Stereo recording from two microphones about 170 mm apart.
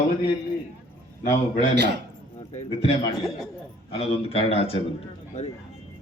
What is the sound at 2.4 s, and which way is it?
Speech, 40° left (ahead or behind).